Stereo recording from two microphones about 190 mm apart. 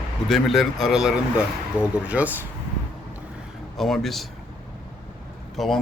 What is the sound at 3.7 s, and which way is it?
Speech, centre (ahead or behind).